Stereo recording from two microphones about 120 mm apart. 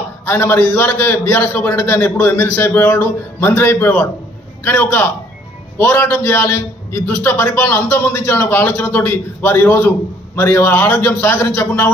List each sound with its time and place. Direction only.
0.2 s a man's voice: 20° left (ahead or behind)